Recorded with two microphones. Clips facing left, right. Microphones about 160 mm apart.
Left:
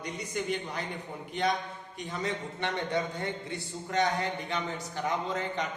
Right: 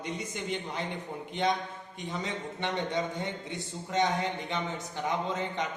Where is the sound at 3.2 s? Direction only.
20° right (ahead or behind).